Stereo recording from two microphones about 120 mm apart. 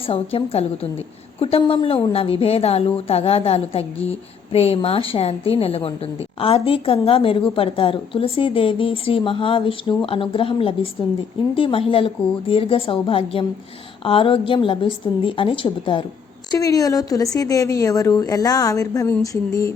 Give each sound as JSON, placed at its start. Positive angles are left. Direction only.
{"t": 0.1, "sound": "a woman's voice", "side_deg": 55}
{"t": 16.5, "sound": "a woman's voice", "side_deg": 30}